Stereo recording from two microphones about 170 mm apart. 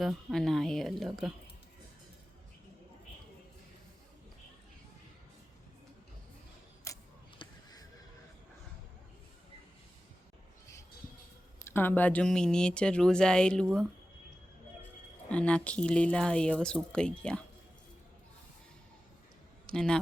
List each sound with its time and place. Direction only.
0.0 s speech: centre (ahead or behind)
6.9 s a sound: 15° left (ahead or behind)
11.6 s speech: 10° left (ahead or behind)
15.3 s speech: 5° left (ahead or behind)
19.6 s speech: 5° left (ahead or behind)